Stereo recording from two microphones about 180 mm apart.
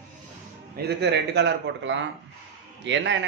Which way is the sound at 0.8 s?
65° right (ahead or behind).